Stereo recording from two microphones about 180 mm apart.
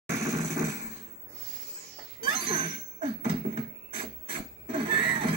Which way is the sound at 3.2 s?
30° right (ahead or behind).